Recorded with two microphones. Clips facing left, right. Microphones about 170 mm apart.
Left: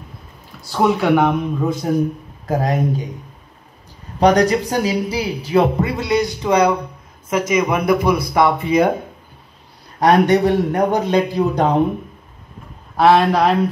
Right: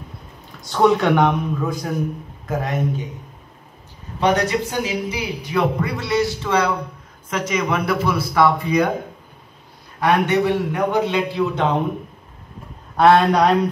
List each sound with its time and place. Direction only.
0.7 s speech: 5° left (ahead or behind)
1.6 s a man's voice: 25° left (ahead or behind)
2.4 s a man's voice: 35° left (ahead or behind)
4.2 s a man's voice: 40° left (ahead or behind)
9.9 s a man's voice: 40° left (ahead or behind)
12.9 s speech: 5° left (ahead or behind)